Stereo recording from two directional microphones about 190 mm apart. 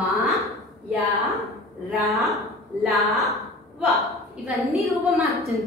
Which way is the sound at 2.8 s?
Centre (ahead or behind).